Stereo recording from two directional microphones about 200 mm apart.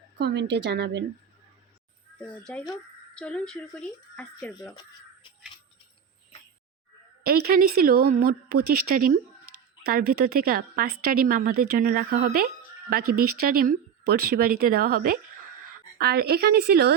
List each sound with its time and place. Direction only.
0.2 s a woman's voice: 55° right (ahead or behind)
2.1 s speech: 5° left (ahead or behind)
7.3 s a woman's voice: 45° right (ahead or behind)